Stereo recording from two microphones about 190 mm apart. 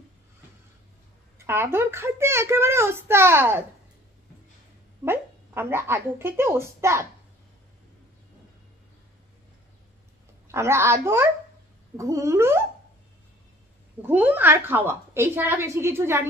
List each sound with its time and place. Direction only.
1.4 s a child's voice: 10° right (ahead or behind)
5.0 s a child's voice: 10° right (ahead or behind)
10.5 s a child's voice: 15° right (ahead or behind)
14.0 s a child's voice: 10° right (ahead or behind)